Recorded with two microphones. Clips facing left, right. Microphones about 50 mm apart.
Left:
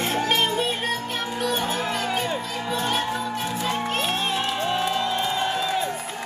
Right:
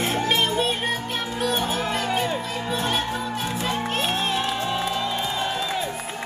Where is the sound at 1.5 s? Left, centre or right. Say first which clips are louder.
Right 1 dB; centre.